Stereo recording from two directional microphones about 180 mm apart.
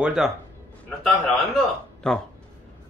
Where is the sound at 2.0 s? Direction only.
5° left (ahead or behind).